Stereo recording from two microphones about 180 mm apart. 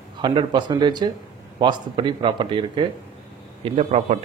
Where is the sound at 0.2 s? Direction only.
25° right (ahead or behind).